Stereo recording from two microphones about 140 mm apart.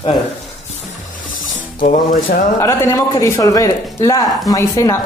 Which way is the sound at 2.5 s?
20° left (ahead or behind).